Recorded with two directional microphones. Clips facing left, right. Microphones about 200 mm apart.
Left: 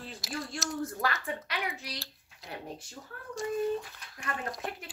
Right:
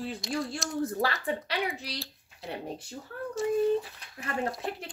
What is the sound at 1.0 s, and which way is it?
A woman's voice, 30° right (ahead or behind).